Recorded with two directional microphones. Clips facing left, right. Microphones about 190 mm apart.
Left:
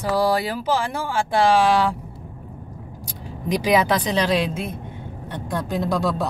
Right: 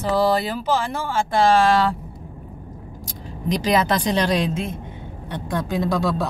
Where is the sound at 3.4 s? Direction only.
10° left (ahead or behind).